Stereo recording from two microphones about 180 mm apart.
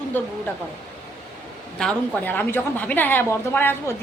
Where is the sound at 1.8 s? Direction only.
5° left (ahead or behind).